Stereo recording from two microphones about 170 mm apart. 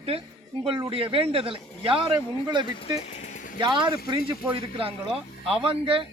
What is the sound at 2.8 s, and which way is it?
Speech, 40° left (ahead or behind).